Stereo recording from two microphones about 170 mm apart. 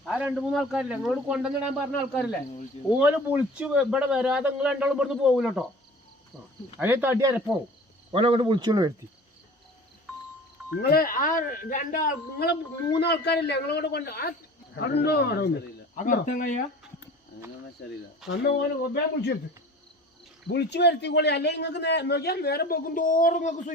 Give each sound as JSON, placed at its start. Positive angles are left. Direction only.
{"t": 0.0, "sound": "a man's voice", "side_deg": -5}
{"t": 3.0, "sound": "a man's voice", "side_deg": -10}
{"t": 6.7, "sound": "speech", "side_deg": -10}
{"t": 8.1, "sound": "speech", "side_deg": -30}
{"t": 10.8, "sound": "a man's voice", "side_deg": 65}
{"t": 16.0, "sound": "speech", "side_deg": 50}
{"t": 17.8, "sound": "a man's voice", "side_deg": 75}
{"t": 20.5, "sound": "a man's voice", "side_deg": 80}